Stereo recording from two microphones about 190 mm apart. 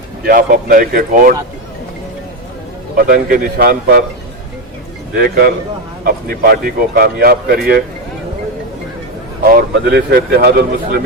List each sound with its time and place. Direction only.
0.3 s speech: 45° right (ahead or behind)
2.9 s speech: 50° right (ahead or behind)
5.1 s speech: 55° right (ahead or behind)
9.4 s speech: 55° right (ahead or behind)